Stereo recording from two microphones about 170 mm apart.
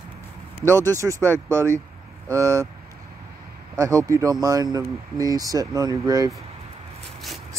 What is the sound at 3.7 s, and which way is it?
Speech, 20° right (ahead or behind).